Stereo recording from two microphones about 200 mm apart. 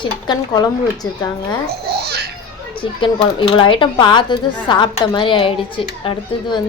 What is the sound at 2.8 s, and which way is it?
A woman's voice, 25° left (ahead or behind).